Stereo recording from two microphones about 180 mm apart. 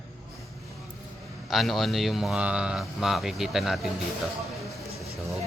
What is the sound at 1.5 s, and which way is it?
Speech, centre (ahead or behind).